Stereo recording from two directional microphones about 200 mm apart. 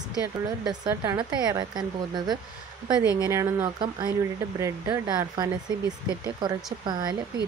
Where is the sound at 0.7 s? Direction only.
20° right (ahead or behind).